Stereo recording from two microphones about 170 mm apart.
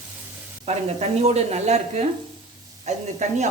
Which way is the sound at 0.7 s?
40° right (ahead or behind).